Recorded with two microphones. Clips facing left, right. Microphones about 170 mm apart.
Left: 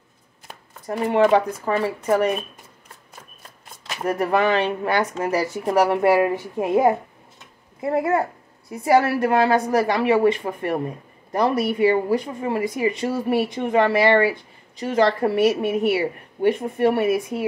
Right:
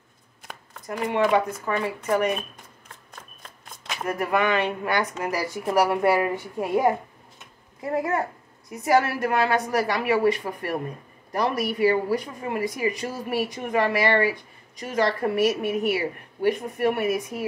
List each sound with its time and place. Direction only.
0.8 s speech: 30° left (ahead or behind)
4.0 s speech: 30° left (ahead or behind)